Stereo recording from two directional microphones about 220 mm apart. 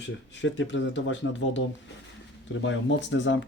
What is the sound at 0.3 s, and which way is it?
Speech, 55° left (ahead or behind).